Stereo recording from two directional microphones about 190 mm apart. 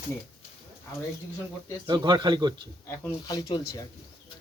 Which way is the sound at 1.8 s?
25° right (ahead or behind).